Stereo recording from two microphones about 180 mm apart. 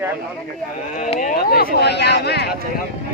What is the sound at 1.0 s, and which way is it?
Speech, 45° left (ahead or behind).